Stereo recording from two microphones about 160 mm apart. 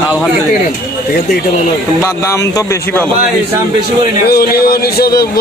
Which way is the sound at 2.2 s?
20° left (ahead or behind).